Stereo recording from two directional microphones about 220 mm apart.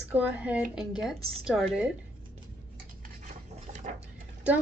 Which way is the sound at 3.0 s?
30° right (ahead or behind).